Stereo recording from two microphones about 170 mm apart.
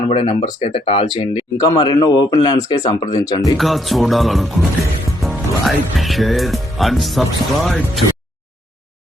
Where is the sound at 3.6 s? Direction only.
Centre (ahead or behind).